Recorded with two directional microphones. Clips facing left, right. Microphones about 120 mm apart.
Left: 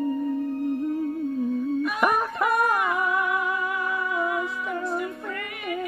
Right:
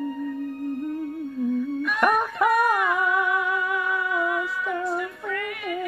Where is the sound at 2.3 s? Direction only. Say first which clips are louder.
Right 2 dB; 35° left (ahead or behind).